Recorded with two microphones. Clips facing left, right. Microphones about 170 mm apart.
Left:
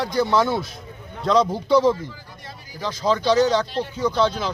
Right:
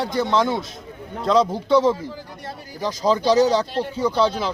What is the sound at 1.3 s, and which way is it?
Speech, centre (ahead or behind).